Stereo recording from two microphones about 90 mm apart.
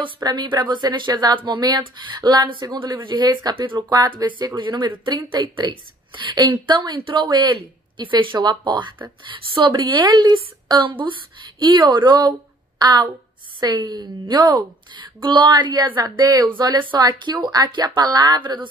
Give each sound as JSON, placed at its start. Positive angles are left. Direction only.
{"t": 0.2, "sound": "a woman's voice", "side_deg": -50}
{"t": 7.5, "sound": "a woman's voice", "side_deg": -65}
{"t": 9.8, "sound": "a woman's voice", "side_deg": -55}
{"t": 16.4, "sound": "a woman's voice", "side_deg": -55}